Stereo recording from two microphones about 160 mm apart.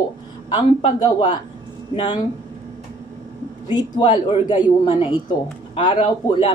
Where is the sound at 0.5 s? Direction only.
30° left (ahead or behind).